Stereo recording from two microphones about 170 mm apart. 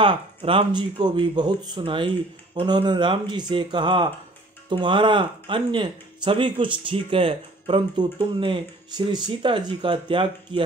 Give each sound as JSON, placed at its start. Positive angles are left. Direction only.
{"t": 0.0, "sound": "speech", "side_deg": -30}